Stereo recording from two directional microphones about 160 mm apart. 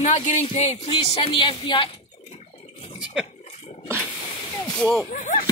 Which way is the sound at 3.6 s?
45° left (ahead or behind).